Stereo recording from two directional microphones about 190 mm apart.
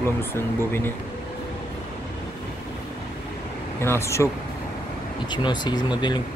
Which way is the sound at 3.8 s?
15° left (ahead or behind).